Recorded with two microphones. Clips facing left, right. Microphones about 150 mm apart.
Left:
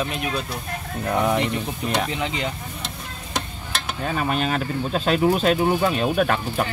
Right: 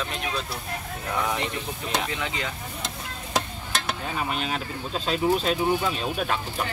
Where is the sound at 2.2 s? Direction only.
20° left (ahead or behind).